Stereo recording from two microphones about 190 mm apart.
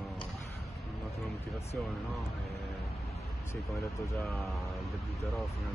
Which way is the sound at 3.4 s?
15° left (ahead or behind).